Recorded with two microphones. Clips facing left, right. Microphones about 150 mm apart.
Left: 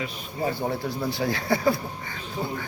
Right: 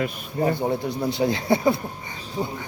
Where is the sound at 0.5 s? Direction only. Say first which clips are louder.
Right 3 dB; 20° right (ahead or behind).